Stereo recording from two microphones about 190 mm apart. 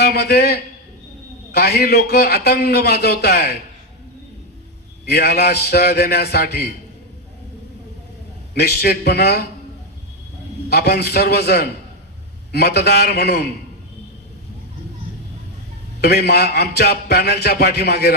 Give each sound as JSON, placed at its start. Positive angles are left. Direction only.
{"t": 0.0, "sound": "a man's voice", "side_deg": 60}
{"t": 5.0, "sound": "a man's voice", "side_deg": 60}
{"t": 8.5, "sound": "a man's voice", "side_deg": 60}
{"t": 10.7, "sound": "a man's voice", "side_deg": 60}
{"t": 16.0, "sound": "a man's voice", "side_deg": 60}